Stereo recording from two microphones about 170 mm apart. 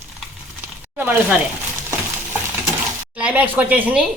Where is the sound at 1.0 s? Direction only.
10° right (ahead or behind).